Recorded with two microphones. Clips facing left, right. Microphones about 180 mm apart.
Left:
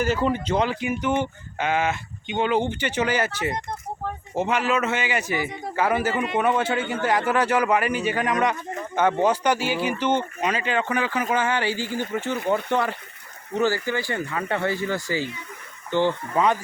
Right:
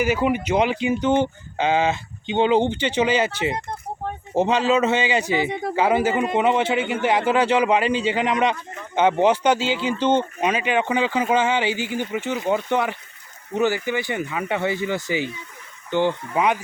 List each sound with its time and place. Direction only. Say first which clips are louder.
0.0 s speech: right 2 dB; 15° right (ahead or behind)